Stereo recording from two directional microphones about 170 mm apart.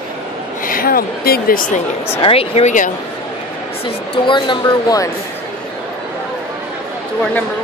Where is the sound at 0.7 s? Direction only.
60° left (ahead or behind).